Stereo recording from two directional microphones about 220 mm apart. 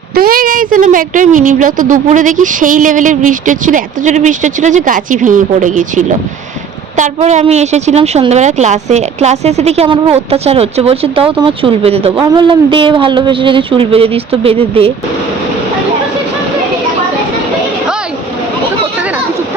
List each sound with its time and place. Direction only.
0.1 s a woman's voice: 40° right (ahead or behind); by 14.9 s 25° right (ahead or behind)